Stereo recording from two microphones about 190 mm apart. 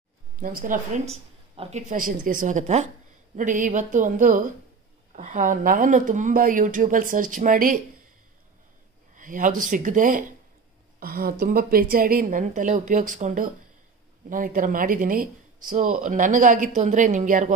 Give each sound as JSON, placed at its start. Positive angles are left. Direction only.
{"t": 0.4, "sound": "a woman's voice", "side_deg": -45}
{"t": 9.1, "sound": "speech", "side_deg": -45}